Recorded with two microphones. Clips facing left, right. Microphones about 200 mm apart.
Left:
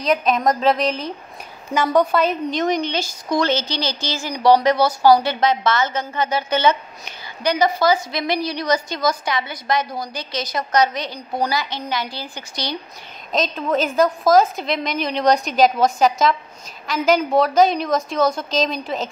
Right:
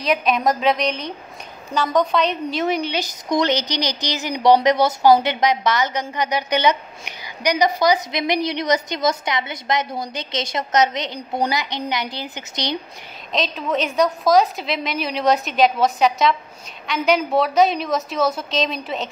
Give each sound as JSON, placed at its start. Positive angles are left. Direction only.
{"t": 0.0, "sound": "a woman's voice", "side_deg": 0}
{"t": 2.5, "sound": "a woman's voice", "side_deg": -5}
{"t": 13.3, "sound": "a woman's voice", "side_deg": 0}